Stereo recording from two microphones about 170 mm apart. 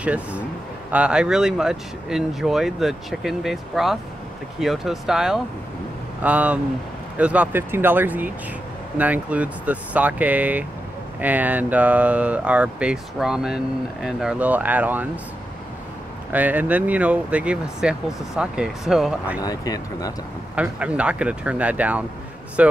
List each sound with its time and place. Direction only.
0.0 s speech: 10° right (ahead or behind)
16.3 s speech: 10° right (ahead or behind)
19.4 s speech: 20° left (ahead or behind)
20.5 s speech: 5° right (ahead or behind)